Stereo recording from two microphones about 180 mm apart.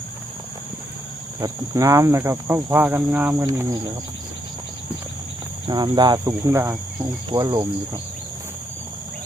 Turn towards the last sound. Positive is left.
turn(degrees=-20)  # may be behind; listen again after turning